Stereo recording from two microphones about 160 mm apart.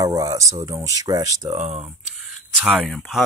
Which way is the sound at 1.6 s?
35° right (ahead or behind).